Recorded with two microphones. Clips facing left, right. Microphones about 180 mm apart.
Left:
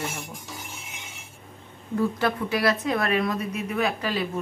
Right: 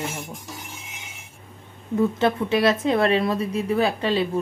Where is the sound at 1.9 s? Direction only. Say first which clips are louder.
Right 4 dB; 25° right (ahead or behind).